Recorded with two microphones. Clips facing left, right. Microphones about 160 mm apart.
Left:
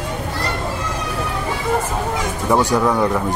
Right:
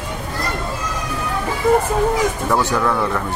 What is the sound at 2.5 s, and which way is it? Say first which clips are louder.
Speech: left 6 dB; 15° left (ahead or behind).